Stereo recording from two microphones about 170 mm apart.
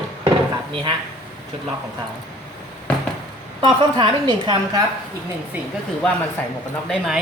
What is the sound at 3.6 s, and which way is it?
Speech, 25° right (ahead or behind).